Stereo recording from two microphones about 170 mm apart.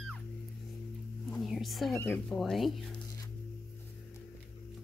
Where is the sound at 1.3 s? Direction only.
Centre (ahead or behind).